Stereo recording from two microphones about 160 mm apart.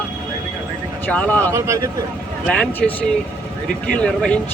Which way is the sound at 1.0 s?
10° left (ahead or behind).